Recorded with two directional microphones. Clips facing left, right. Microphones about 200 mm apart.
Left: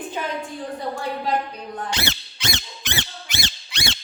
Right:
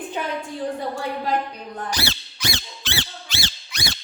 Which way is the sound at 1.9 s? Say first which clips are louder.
Even; 20° left (ahead or behind).